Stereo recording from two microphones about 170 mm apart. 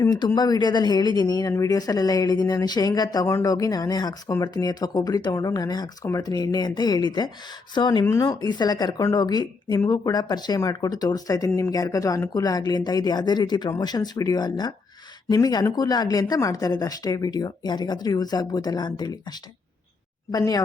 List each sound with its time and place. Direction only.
0.0 s speech: 25° left (ahead or behind)
20.3 s speech: 20° left (ahead or behind)